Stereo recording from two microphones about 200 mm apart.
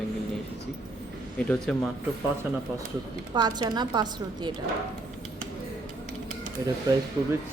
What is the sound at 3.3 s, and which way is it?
A woman's voice, 20° right (ahead or behind).